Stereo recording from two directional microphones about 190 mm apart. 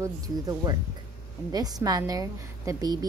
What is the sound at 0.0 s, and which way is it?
A woman's voice, 20° right (ahead or behind).